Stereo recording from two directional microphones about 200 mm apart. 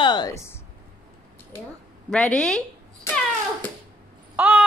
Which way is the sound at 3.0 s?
10° left (ahead or behind).